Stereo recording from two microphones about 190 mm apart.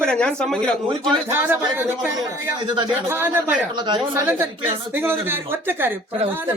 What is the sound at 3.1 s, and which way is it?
Speech, 10° right (ahead or behind).